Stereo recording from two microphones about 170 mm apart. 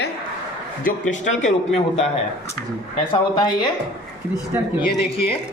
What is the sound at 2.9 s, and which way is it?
Speech, 30° left (ahead or behind).